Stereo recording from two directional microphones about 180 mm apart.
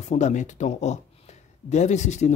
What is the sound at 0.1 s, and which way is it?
Speech, 40° left (ahead or behind).